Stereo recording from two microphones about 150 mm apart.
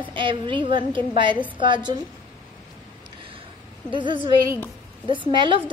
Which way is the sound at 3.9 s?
30° right (ahead or behind).